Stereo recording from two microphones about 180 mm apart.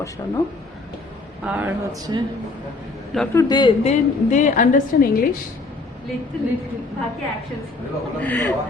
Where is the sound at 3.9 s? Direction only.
45° left (ahead or behind).